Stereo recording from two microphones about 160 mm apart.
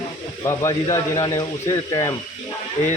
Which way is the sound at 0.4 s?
20° left (ahead or behind).